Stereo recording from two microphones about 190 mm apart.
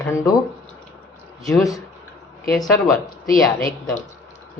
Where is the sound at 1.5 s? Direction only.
20° left (ahead or behind).